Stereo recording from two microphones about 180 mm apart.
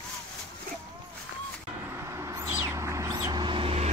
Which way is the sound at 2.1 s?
15° right (ahead or behind).